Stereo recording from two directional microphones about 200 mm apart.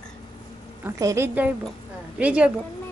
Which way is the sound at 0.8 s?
15° right (ahead or behind).